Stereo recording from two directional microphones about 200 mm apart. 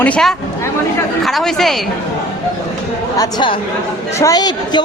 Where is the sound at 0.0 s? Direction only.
5° left (ahead or behind).